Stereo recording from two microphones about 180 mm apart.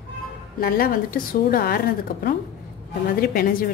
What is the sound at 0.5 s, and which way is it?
A woman's voice, 55° left (ahead or behind).